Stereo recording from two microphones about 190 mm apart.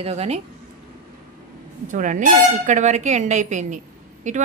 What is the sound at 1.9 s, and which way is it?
A woman's voice, 40° right (ahead or behind).